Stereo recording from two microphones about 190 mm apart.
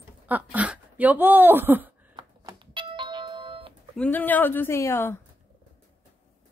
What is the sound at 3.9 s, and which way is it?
Speech, 10° left (ahead or behind).